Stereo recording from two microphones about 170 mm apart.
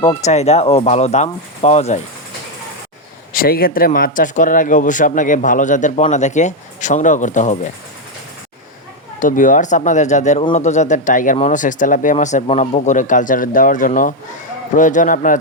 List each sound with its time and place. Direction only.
0.0 s speech: 40° left (ahead or behind)
3.3 s speech: 60° left (ahead or behind); by 7.6 s 45° left (ahead or behind)
9.2 s speech: 50° left (ahead or behind)